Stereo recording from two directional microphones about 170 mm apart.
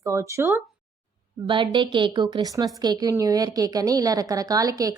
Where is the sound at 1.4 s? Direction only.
30° right (ahead or behind).